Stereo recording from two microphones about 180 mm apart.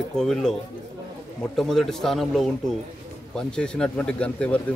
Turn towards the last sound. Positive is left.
turn(degrees=5)  # may be behind; listen again after turning